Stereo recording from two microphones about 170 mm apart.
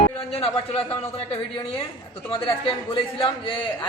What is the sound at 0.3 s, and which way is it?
A man's voice, 35° left (ahead or behind).